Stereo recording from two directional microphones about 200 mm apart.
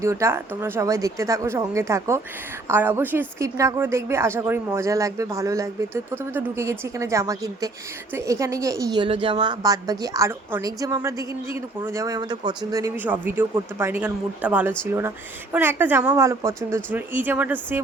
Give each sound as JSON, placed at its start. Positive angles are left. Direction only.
{"t": 0.0, "sound": "a woman's voice", "side_deg": -15}